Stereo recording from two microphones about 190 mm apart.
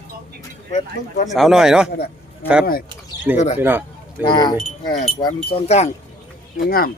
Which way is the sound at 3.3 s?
35° left (ahead or behind).